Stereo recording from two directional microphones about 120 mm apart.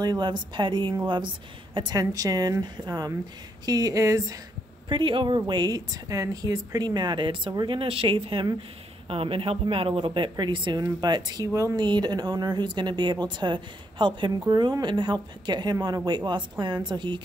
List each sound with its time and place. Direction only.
0.0 s a woman's voice: 35° right (ahead or behind)
4.8 s speech: 45° right (ahead or behind)